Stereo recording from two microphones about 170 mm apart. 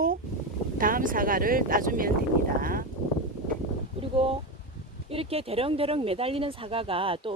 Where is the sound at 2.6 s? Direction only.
55° right (ahead or behind).